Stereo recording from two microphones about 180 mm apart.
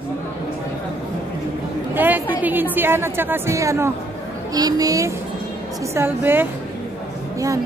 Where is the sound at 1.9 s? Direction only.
10° right (ahead or behind).